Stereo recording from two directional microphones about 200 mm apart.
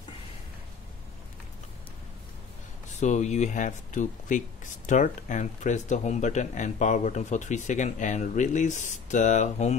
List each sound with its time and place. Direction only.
3.0 s speech: 35° left (ahead or behind)